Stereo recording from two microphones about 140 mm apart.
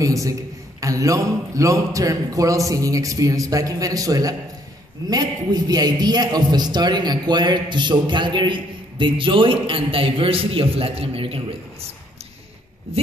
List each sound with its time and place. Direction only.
0.0 s a man's voice: 25° right (ahead or behind); by 11.4 s 40° right (ahead or behind)